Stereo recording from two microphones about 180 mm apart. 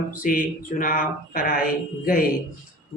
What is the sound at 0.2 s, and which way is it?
A man's voice, 50° left (ahead or behind).